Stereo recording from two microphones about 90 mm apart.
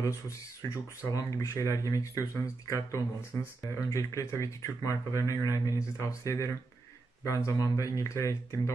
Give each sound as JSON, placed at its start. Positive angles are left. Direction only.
{"t": 0.6, "sound": "speech", "side_deg": 40}